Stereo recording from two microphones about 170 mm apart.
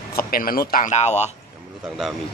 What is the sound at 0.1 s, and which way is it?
Speech, 60° left (ahead or behind).